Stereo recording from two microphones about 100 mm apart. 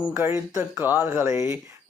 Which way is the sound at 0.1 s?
25° right (ahead or behind).